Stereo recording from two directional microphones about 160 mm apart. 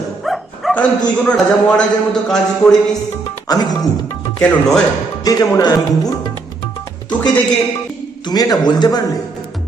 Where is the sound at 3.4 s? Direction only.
25° left (ahead or behind).